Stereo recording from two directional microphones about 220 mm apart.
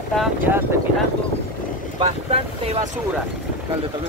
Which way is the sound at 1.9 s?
25° right (ahead or behind).